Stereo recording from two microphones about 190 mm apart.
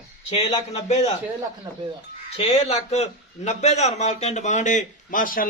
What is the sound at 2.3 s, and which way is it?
A man's voice, 30° left (ahead or behind).